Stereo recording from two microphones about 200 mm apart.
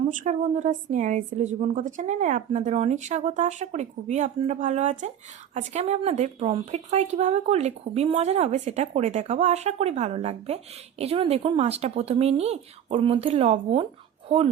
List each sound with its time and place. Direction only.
0.0 s speech: 40° right (ahead or behind)